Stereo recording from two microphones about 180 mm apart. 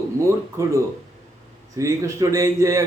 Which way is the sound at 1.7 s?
15° right (ahead or behind).